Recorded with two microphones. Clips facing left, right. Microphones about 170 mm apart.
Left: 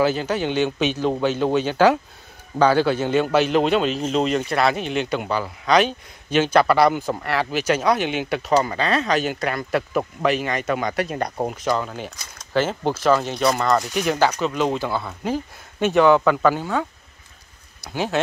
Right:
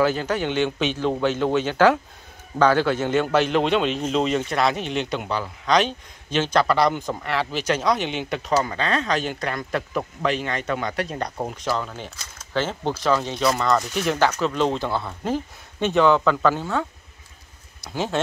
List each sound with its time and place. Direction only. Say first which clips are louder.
0.0 s speech: left 1 dB; 20° left (ahead or behind)
0.6 s speech: left 2 dB; 10° left (ahead or behind)
17.8 s speech: left 2 dB; 5° left (ahead or behind)